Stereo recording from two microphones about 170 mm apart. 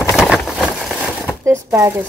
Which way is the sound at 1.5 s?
15° right (ahead or behind).